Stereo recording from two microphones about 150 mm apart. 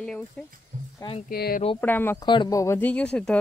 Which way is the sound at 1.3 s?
90° left.